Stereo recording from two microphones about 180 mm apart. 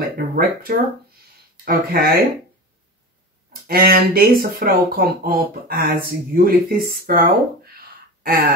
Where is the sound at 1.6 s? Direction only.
55° right (ahead or behind).